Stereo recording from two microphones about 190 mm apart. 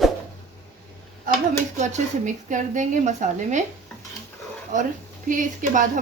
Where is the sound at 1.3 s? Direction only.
45° right (ahead or behind).